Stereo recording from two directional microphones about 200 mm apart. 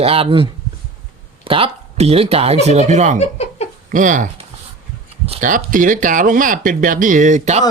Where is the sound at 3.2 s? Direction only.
30° left (ahead or behind).